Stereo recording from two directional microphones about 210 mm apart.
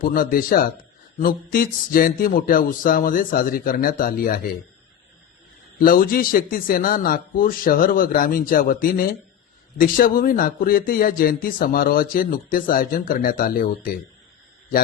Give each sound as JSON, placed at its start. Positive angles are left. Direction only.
{"t": 0.0, "sound": "a man's voice", "side_deg": 40}
{"t": 5.8, "sound": "a man's voice", "side_deg": 45}